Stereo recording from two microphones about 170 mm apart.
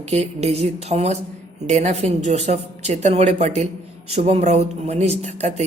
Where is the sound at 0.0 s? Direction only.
40° right (ahead or behind).